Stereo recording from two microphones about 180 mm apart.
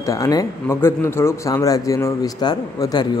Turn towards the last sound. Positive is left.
turn(degrees=20)  # may be behind; listen again after turning